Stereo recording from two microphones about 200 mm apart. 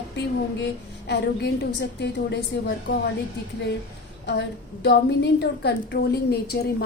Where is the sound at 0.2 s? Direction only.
60° left (ahead or behind).